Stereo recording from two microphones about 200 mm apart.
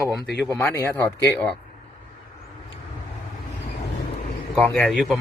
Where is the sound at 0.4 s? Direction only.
10° left (ahead or behind).